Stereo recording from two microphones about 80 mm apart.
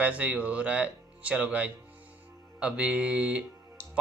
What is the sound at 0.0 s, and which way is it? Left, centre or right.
Speech, centre.